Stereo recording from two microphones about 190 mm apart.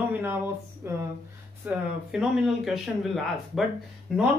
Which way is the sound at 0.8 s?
10° right (ahead or behind).